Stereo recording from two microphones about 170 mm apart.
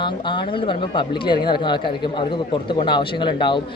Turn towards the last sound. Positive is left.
turn(degrees=30)  # may be behind; listen again after turning